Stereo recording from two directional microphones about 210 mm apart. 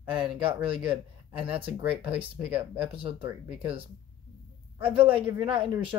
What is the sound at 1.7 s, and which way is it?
Speech, 5° right (ahead or behind).